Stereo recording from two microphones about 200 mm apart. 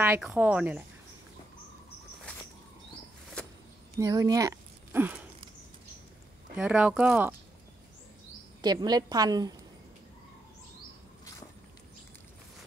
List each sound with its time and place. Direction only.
0.2 s speech: 5° right (ahead or behind)
4.0 s speech: 15° right (ahead or behind)
6.5 s speech: 5° right (ahead or behind)
8.5 s a woman's voice: 20° right (ahead or behind)